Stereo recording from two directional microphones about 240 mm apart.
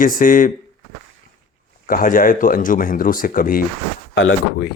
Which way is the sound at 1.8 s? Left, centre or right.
Left.